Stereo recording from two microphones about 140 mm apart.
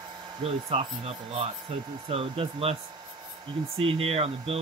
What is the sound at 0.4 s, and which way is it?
Speech, 45° right (ahead or behind).